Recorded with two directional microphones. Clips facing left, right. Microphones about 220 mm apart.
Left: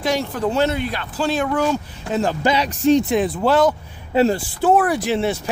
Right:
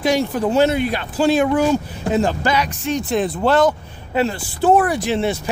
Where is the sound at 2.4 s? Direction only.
30° left (ahead or behind).